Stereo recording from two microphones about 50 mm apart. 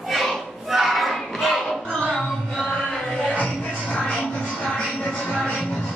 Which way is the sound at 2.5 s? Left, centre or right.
Centre.